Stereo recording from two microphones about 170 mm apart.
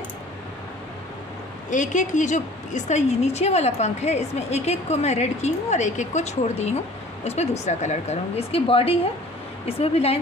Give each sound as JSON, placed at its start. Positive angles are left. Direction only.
{"t": 1.7, "sound": "a woman's voice", "side_deg": 45}